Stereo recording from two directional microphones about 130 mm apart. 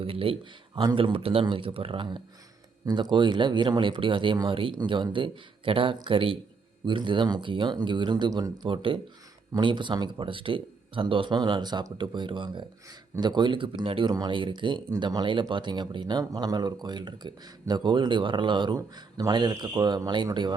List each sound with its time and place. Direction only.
0.0 s a man's voice: 45° right (ahead or behind)